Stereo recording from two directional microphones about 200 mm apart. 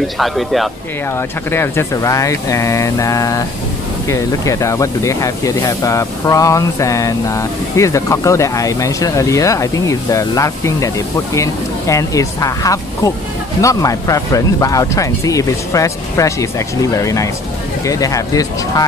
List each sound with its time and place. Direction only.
0.2 s speech: centre (ahead or behind)
1.5 s speech: 10° left (ahead or behind)